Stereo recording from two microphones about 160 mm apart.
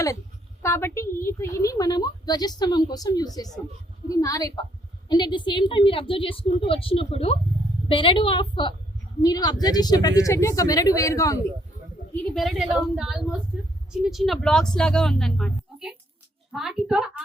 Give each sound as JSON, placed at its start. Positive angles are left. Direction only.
{"t": 0.6, "sound": "a woman's voice", "side_deg": 15}
{"t": 12.1, "sound": "a woman's voice", "side_deg": 0}